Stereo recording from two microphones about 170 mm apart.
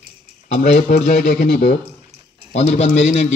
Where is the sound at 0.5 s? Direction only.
45° left (ahead or behind); by 1.8 s 60° left (ahead or behind).